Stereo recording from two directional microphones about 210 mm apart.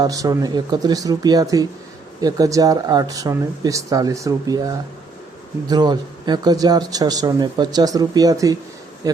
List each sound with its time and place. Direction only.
0.0 s speech: 15° right (ahead or behind)